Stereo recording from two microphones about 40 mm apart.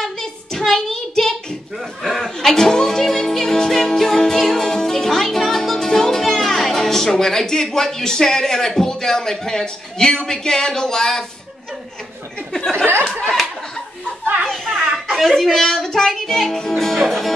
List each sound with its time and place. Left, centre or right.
0.0 s child singing: centre
2.0 s chuckle: centre
2.3 s music: centre
12.5 s speech: centre
13.2 s a sound: centre
14.2 s children playing: right
14.5 s children playing: centre
15.1 s music: centre